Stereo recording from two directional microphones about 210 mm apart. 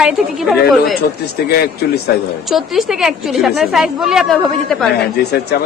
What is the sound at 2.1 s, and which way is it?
Speech, 50° left (ahead or behind).